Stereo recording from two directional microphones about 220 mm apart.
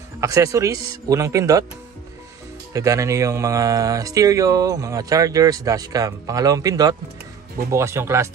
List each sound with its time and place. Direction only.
0.2 s speech: 15° right (ahead or behind)
2.7 s speech: 15° right (ahead or behind)